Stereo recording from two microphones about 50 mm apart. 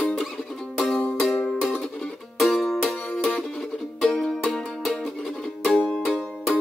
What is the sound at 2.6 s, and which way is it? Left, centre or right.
Music, centre.